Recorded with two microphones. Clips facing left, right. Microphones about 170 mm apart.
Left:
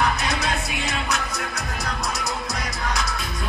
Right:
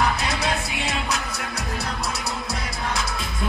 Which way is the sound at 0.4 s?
30° right (ahead or behind).